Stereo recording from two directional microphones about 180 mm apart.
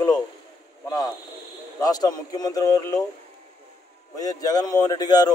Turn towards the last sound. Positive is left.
turn(degrees=20)  # may be behind; listen again after turning